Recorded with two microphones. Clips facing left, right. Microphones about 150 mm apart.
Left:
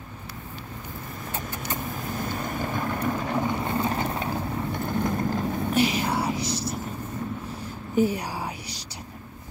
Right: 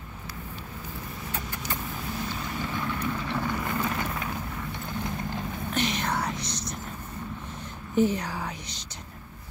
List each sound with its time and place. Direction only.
2.0 s boat: 50° left (ahead or behind)
3.3 s vehicle: 25° left (ahead or behind)
4.7 s vehicle: 50° left (ahead or behind)
5.8 s whispering: 10° left (ahead or behind)
7.9 s whispering: 10° left (ahead or behind)